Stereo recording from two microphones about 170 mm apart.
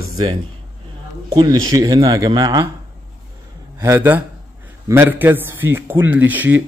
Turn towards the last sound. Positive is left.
turn(degrees=-10)  # may be behind; listen again after turning